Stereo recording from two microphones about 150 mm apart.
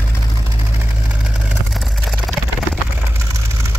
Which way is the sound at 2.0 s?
Centre (ahead or behind).